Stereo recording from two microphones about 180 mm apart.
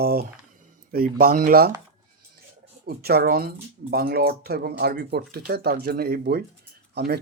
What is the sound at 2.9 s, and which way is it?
Speech, 60° right (ahead or behind).